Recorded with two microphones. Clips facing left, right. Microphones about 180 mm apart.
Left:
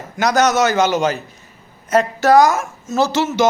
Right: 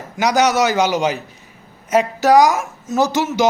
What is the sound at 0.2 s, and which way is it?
Speech, 10° right (ahead or behind).